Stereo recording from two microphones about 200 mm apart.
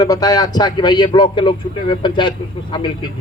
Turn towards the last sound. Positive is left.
turn(degrees=20)  # may be behind; listen again after turning